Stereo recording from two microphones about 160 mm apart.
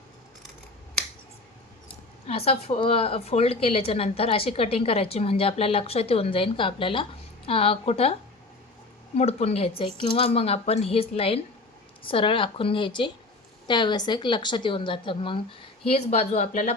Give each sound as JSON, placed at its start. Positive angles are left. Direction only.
{"t": 2.2, "sound": "speech", "side_deg": 40}
{"t": 9.1, "sound": "speech", "side_deg": 40}